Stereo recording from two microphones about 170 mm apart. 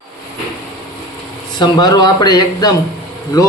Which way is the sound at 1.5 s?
25° left (ahead or behind).